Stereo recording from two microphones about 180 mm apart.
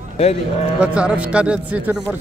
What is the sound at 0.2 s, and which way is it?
Speech, 35° left (ahead or behind).